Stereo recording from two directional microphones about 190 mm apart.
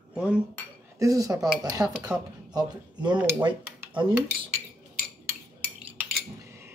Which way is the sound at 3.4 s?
25° right (ahead or behind).